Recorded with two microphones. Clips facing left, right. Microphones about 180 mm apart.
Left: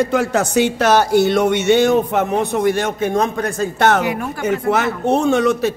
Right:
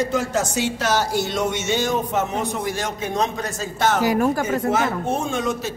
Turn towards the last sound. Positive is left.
turn(degrees=70)  # may be behind; listen again after turning